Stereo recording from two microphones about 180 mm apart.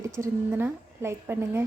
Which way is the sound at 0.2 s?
15° right (ahead or behind).